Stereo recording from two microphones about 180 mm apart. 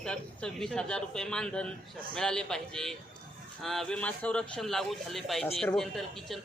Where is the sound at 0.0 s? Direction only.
5° left (ahead or behind).